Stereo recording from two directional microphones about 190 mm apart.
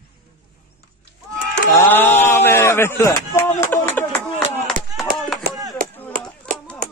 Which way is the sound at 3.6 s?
10° left (ahead or behind).